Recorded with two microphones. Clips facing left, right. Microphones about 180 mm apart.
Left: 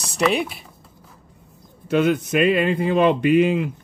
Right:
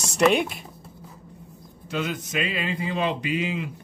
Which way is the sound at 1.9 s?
60° left (ahead or behind).